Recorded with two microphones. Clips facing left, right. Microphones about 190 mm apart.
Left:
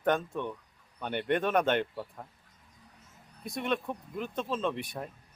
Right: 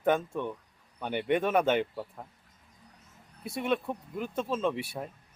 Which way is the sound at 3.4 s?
5° right (ahead or behind).